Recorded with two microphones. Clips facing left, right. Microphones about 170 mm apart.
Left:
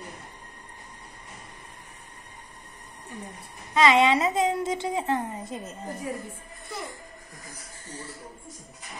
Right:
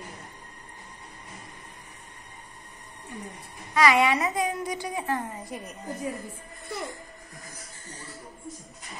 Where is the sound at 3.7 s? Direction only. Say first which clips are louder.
Left 2 dB; 20° left (ahead or behind).